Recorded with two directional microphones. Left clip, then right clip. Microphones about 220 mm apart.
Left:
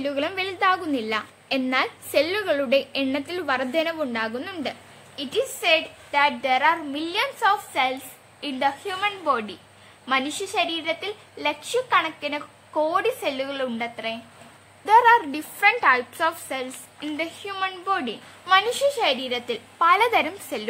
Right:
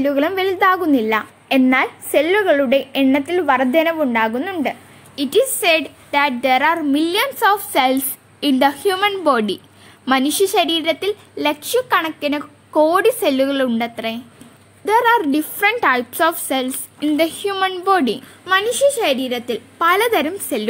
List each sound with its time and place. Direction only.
0.0 s a woman's voice: 15° right (ahead or behind)
5.1 s a woman's voice: 35° right (ahead or behind)
14.9 s a woman's voice: 15° right (ahead or behind); by 18.1 s 40° right (ahead or behind)
18.4 s a woman's voice: 15° right (ahead or behind)